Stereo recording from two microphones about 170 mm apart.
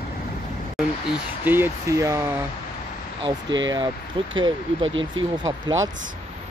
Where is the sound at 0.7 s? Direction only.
5° right (ahead or behind).